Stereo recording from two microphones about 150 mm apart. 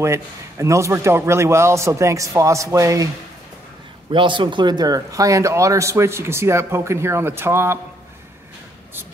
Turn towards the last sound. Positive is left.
turn(degrees=-15)  # may be behind; listen again after turning